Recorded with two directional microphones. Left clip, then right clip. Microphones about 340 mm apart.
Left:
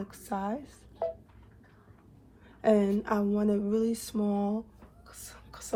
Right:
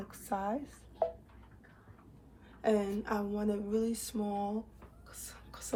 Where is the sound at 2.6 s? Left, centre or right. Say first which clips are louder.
Left 6 dB; centre.